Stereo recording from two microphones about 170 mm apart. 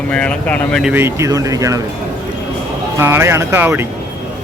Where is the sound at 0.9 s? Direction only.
15° right (ahead or behind).